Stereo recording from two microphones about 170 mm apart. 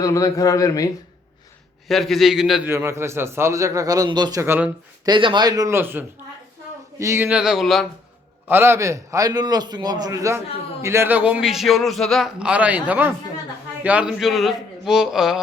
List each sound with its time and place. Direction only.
0.0 s a man's voice: 20° left (ahead or behind)
1.9 s a man's voice: centre (ahead or behind)
2.6 s a man's voice: 15° right (ahead or behind)
5.0 s a man's voice: 30° right (ahead or behind); by 7.9 s centre (ahead or behind)
8.4 s a man's voice: 15° right (ahead or behind)